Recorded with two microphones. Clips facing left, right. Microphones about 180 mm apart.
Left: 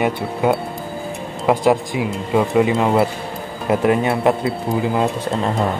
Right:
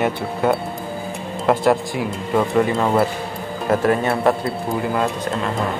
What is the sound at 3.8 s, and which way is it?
Speech, 15° left (ahead or behind).